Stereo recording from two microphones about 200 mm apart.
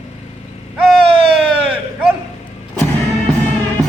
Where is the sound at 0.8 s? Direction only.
5° right (ahead or behind).